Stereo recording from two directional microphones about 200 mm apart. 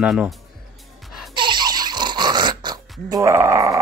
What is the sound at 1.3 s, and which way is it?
Laughter, 20° right (ahead or behind).